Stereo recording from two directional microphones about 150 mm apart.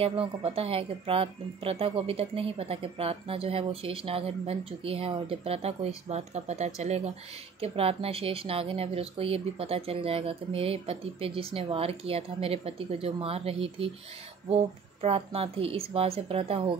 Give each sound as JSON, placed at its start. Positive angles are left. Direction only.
{"t": 0.0, "sound": "a woman's voice", "side_deg": -40}